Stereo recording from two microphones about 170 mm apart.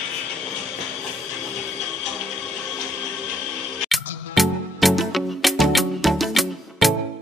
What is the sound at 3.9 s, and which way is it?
Music, centre (ahead or behind).